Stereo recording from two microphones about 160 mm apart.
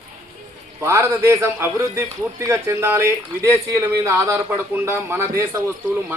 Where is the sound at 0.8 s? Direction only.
20° right (ahead or behind).